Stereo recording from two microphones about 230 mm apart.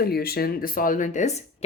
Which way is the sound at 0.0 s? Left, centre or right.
Left.